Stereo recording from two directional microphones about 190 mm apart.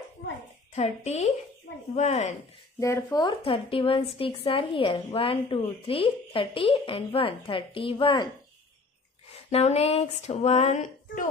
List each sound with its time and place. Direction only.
0.7 s speech: 35° left (ahead or behind)
2.8 s speech: 15° left (ahead or behind)
9.5 s speech: 35° left (ahead or behind)